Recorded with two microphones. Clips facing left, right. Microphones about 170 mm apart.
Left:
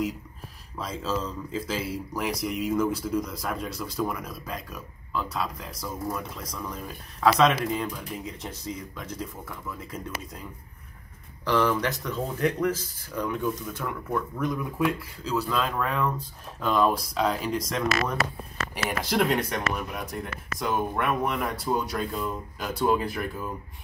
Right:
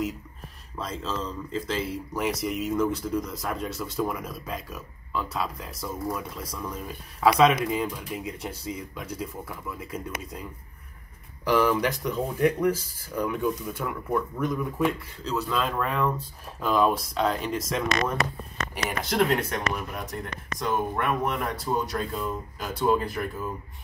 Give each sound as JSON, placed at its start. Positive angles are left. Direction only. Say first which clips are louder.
{"t": 0.7, "sound": "speech", "louder": "left 2 dB", "side_deg": 0}
{"t": 11.4, "sound": "speech", "louder": "right 2 dB", "side_deg": -10}